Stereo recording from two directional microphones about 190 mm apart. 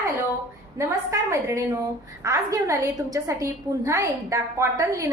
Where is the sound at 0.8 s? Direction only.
15° right (ahead or behind).